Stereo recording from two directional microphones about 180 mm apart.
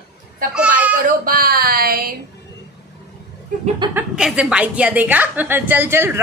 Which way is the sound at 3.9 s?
5° right (ahead or behind).